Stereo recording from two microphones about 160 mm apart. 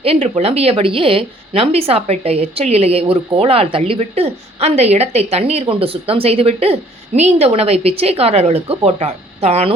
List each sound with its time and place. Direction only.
0.0 s speech: 40° right (ahead or behind)